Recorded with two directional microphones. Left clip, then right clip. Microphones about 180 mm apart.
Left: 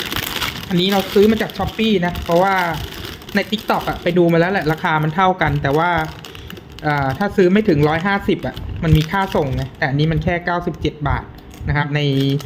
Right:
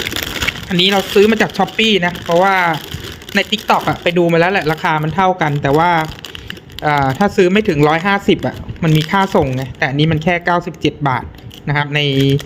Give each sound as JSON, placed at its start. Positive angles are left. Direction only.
{"t": 0.7, "sound": "speech", "side_deg": -35}